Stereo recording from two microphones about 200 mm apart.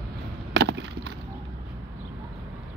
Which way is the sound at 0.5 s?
55° right (ahead or behind).